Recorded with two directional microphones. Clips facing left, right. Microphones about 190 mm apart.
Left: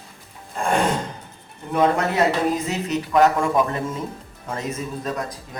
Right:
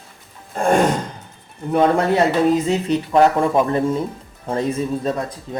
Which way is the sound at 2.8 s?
30° right (ahead or behind).